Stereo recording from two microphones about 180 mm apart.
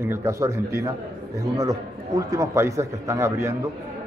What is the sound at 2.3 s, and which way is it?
A man's voice, 15° right (ahead or behind).